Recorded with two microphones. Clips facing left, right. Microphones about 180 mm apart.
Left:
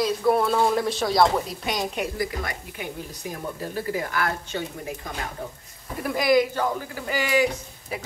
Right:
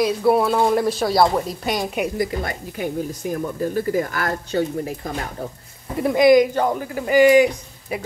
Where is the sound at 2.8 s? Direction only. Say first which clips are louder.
Right 10 dB; 45° right (ahead or behind).